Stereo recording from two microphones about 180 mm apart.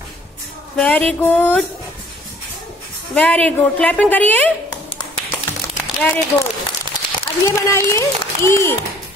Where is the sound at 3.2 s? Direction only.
10° left (ahead or behind).